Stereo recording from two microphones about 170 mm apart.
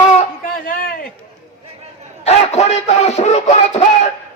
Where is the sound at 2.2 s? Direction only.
40° left (ahead or behind).